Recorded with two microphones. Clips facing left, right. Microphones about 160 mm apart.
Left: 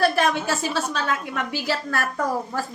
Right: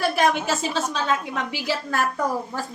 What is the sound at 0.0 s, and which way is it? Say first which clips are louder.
A child's voice: left 1 dB; 15° right (ahead or behind).